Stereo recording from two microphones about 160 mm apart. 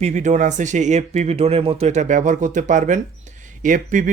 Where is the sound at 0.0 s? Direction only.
50° right (ahead or behind).